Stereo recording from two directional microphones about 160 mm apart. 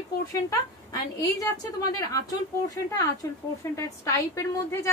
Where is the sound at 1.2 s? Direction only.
20° left (ahead or behind).